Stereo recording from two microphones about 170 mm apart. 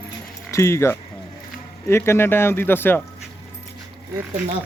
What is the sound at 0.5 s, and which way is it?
Speech, 15° left (ahead or behind).